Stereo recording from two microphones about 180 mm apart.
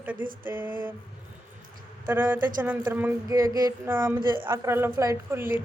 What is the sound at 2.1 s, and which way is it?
Speech, 10° right (ahead or behind).